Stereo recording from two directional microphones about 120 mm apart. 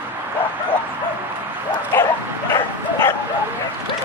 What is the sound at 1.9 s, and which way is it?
Bow-wow, 20° left (ahead or behind).